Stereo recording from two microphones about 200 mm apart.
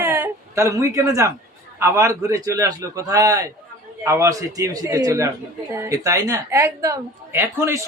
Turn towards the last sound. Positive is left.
turn(degrees=-10)  # may be behind; listen again after turning